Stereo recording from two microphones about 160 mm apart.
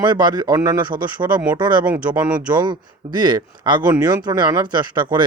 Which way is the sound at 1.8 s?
10° right (ahead or behind).